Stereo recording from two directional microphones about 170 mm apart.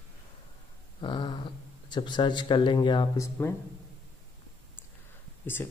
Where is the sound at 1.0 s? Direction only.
25° left (ahead or behind).